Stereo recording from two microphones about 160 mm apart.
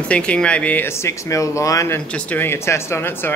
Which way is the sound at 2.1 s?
10° left (ahead or behind).